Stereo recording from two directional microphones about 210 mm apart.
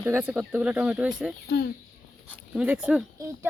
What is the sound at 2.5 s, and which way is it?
Speech, 5° right (ahead or behind).